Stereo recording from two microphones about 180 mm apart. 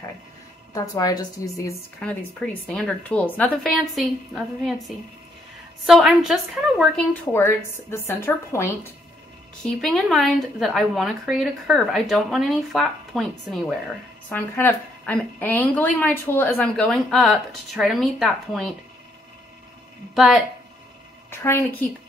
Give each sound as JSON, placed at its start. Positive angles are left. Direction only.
{"t": 0.7, "sound": "a woman's voice", "side_deg": 20}
{"t": 2.0, "sound": "a woman's voice", "side_deg": 5}
{"t": 5.9, "sound": "a woman's voice", "side_deg": 0}
{"t": 7.3, "sound": "a woman's voice", "side_deg": 15}
{"t": 9.7, "sound": "a woman's voice", "side_deg": 0}
{"t": 14.3, "sound": "a woman's voice", "side_deg": 10}
{"t": 20.2, "sound": "a woman's voice", "side_deg": 0}
{"t": 21.3, "sound": "a woman's voice", "side_deg": 15}